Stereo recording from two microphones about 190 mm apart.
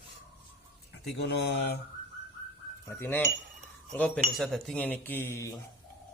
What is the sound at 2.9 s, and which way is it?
Speech, 10° left (ahead or behind).